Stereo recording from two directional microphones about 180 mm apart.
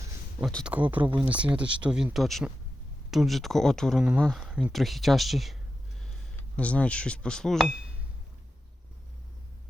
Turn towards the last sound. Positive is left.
turn(degrees=-5)  # may be behind; listen again after turning